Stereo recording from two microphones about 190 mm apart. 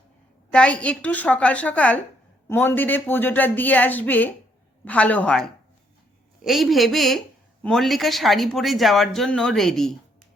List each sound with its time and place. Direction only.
0.5 s a woman's voice: 5° left (ahead or behind)